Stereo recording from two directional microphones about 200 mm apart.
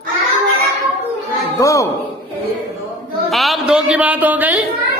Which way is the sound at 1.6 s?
15° left (ahead or behind).